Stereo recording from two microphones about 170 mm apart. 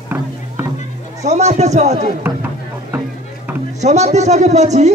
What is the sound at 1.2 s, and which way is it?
Speech, 40° right (ahead or behind).